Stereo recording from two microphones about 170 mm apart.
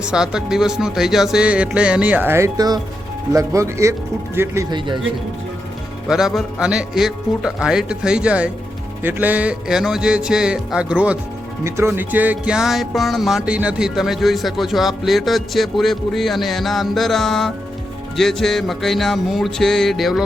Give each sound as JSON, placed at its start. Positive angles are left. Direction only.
{"t": 0.0, "sound": "speech", "side_deg": -5}
{"t": 6.1, "sound": "speech", "side_deg": 0}